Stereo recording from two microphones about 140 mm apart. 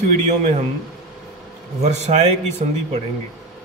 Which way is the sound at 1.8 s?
50° right (ahead or behind).